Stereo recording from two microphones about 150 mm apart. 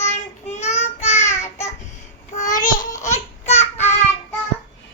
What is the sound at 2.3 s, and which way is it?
Child singing, 60° left (ahead or behind).